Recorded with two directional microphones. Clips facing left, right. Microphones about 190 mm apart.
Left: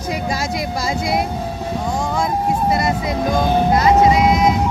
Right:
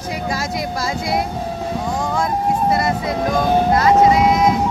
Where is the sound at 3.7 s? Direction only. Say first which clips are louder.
Even; 20° left (ahead or behind).